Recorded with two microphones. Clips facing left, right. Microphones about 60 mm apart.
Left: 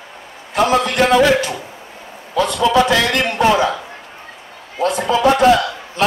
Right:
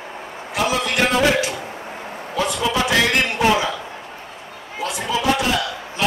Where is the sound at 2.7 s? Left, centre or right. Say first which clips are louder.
Left 5 dB; left.